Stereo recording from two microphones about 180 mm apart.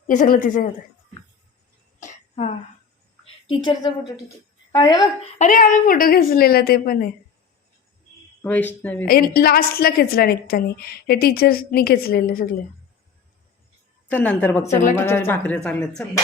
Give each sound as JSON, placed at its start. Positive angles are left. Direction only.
{"t": 0.1, "sound": "a woman's voice", "side_deg": 45}
{"t": 2.0, "sound": "throat clearing", "side_deg": 40}
{"t": 3.5, "sound": "a woman's voice", "side_deg": 25}
{"t": 5.4, "sound": "a woman's voice", "side_deg": 45}
{"t": 8.4, "sound": "speech", "side_deg": 10}
{"t": 9.0, "sound": "a woman's voice", "side_deg": 55}
{"t": 14.1, "sound": "speech", "side_deg": 10}